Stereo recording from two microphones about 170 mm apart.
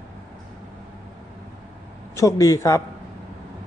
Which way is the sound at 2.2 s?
20° left (ahead or behind).